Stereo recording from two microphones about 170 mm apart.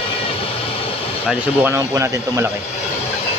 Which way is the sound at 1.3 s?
15° right (ahead or behind).